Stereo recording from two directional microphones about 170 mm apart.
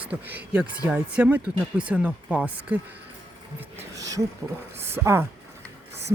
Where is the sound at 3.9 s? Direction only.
20° right (ahead or behind).